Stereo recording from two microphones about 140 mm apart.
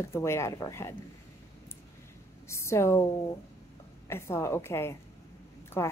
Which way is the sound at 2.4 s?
20° left (ahead or behind).